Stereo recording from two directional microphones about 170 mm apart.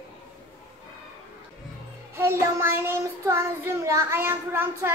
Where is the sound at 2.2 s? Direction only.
15° right (ahead or behind).